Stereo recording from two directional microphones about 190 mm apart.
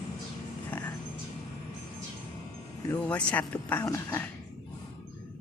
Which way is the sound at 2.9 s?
5° left (ahead or behind).